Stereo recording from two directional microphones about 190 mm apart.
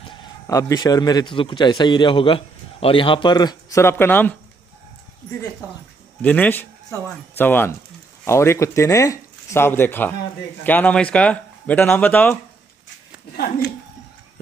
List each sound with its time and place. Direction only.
0.5 s a man's voice: 15° left (ahead or behind)
6.2 s speech: 10° left (ahead or behind)